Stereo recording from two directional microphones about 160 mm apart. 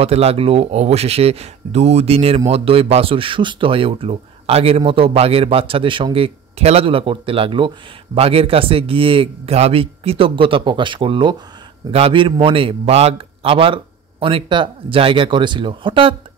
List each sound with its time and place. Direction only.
0.0 s speech: 40° right (ahead or behind)